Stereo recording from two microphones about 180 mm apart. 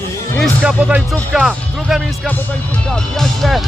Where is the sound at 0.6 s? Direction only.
5° right (ahead or behind).